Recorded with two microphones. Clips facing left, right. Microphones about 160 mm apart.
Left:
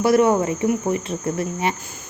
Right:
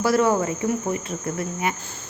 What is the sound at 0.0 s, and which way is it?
Speech, 20° left (ahead or behind).